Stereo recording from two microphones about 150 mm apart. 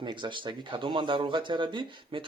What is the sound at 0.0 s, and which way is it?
A child's voice, 30° right (ahead or behind).